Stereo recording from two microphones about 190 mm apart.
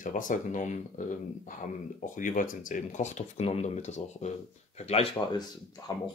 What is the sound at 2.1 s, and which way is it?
Speech, 45° left (ahead or behind).